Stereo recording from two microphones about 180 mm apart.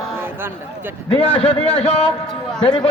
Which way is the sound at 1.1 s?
30° left (ahead or behind).